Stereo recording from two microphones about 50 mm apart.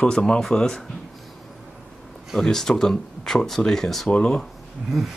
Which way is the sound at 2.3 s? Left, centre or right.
Centre.